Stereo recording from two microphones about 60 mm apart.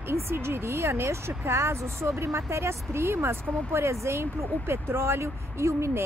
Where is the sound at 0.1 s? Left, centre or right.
Right.